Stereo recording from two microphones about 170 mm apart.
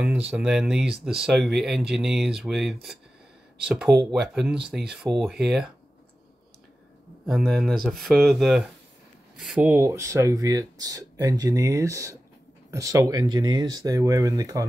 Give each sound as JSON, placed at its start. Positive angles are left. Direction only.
{"t": 0.0, "sound": "speech", "side_deg": -5}
{"t": 7.2, "sound": "speech", "side_deg": 0}